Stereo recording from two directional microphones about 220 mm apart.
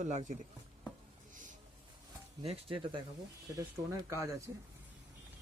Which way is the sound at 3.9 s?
15° right (ahead or behind).